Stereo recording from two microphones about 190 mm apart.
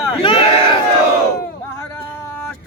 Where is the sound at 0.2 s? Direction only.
30° left (ahead or behind).